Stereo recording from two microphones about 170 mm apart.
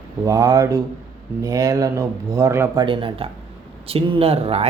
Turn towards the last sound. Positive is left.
turn(degrees=-35)  # may be behind; listen again after turning